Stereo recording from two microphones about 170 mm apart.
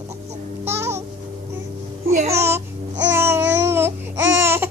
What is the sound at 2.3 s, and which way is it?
Babbling, 15° right (ahead or behind).